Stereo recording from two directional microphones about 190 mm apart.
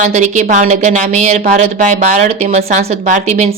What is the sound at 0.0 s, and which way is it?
A woman's voice, 40° right (ahead or behind).